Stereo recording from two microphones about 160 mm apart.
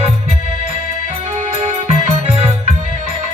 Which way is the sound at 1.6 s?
40° right (ahead or behind).